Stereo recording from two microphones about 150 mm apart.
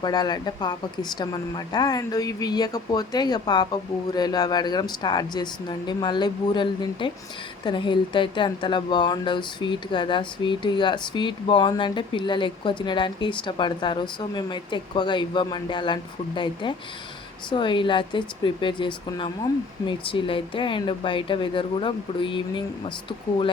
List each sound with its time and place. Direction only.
0.0 s speech: 30° left (ahead or behind)